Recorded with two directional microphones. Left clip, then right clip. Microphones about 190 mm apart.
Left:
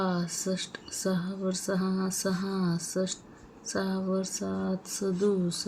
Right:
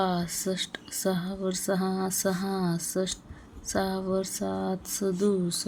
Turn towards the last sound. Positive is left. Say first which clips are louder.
# right 1 dB
turn(degrees=-45)  # may be behind; listen again after turning